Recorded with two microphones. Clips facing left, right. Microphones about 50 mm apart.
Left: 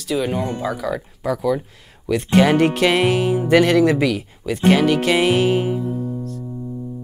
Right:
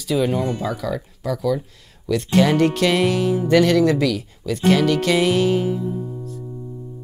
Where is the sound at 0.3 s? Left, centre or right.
Left.